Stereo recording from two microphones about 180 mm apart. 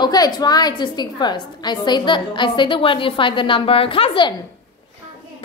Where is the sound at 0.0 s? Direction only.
20° left (ahead or behind).